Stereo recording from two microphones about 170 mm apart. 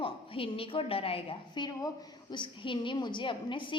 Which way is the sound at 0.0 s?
30° left (ahead or behind).